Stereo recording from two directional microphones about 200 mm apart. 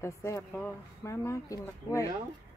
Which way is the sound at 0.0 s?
15° left (ahead or behind).